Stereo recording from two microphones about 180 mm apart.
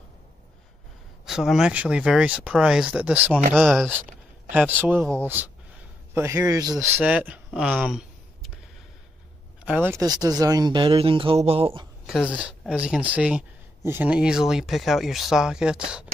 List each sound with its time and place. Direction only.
1.2 s speech: centre (ahead or behind)
4.5 s a man's voice: 10° right (ahead or behind)
9.7 s a man's voice: 10° right (ahead or behind); by 11.9 s 30° right (ahead or behind)
12.1 s speech: 5° right (ahead or behind)